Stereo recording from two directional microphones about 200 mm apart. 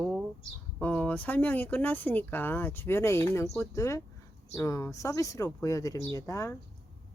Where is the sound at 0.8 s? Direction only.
10° left (ahead or behind).